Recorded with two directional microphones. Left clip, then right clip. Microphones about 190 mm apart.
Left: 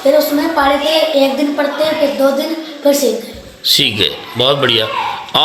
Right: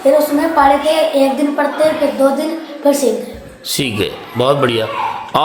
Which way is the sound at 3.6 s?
15° right (ahead or behind).